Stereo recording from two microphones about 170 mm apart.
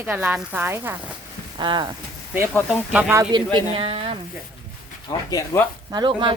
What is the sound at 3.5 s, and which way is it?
Speech, 35° right (ahead or behind).